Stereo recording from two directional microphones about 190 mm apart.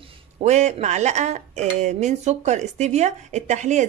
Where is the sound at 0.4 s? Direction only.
35° right (ahead or behind).